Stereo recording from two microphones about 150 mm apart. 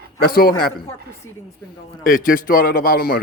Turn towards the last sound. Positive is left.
turn(degrees=85)